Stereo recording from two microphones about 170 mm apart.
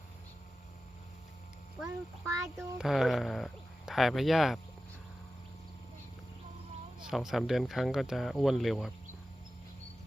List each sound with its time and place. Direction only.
2.3 s a child's voice: 15° right (ahead or behind)
2.7 s speech: centre (ahead or behind)
7.0 s speech: centre (ahead or behind)